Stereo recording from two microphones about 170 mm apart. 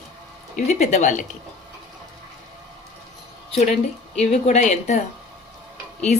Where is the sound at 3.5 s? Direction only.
40° left (ahead or behind).